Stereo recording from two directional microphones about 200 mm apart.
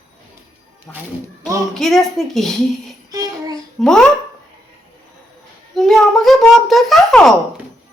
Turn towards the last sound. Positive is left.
turn(degrees=0)  # may be behind; listen again after turning